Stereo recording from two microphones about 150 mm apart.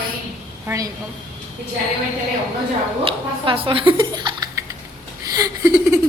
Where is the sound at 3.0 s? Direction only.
35° right (ahead or behind).